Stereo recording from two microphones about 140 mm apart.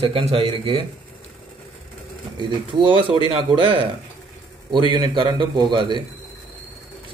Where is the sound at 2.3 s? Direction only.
35° right (ahead or behind).